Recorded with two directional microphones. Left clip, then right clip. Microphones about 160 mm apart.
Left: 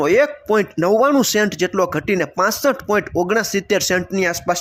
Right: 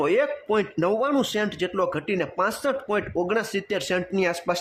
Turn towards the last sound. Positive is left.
turn(degrees=15)  # may be behind; listen again after turning